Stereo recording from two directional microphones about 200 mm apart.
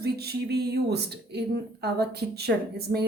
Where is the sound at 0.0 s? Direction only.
55° right (ahead or behind).